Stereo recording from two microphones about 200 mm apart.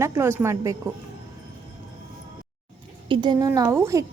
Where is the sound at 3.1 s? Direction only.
20° right (ahead or behind).